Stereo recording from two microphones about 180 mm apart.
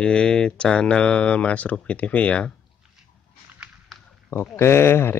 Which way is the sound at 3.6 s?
Centre (ahead or behind).